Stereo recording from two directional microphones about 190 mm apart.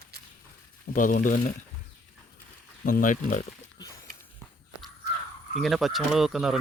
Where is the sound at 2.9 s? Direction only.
45° left (ahead or behind).